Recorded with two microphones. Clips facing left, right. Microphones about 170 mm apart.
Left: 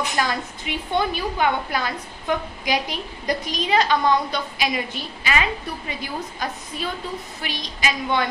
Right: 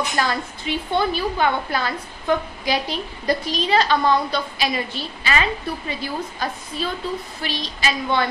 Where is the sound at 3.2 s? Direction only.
15° left (ahead or behind).